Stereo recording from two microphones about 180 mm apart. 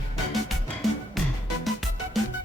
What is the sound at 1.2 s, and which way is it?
Music, centre (ahead or behind).